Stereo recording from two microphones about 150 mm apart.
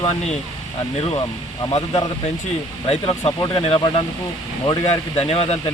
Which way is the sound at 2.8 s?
35° left (ahead or behind).